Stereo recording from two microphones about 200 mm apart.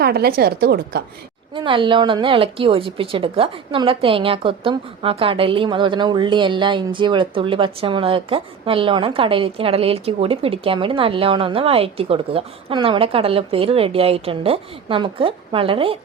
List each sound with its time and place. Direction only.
0.0 s a woman's voice: 50° right (ahead or behind)
1.5 s a woman's voice: 25° right (ahead or behind)